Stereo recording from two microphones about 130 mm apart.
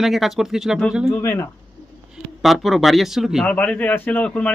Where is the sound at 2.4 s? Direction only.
Centre (ahead or behind).